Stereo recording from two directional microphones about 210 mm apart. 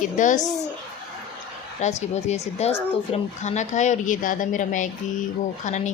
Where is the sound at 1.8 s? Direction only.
35° left (ahead or behind).